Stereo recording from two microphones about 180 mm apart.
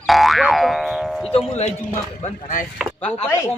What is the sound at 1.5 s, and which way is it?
Speech, 35° left (ahead or behind).